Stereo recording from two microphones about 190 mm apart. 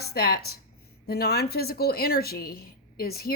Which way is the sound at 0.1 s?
55° left (ahead or behind).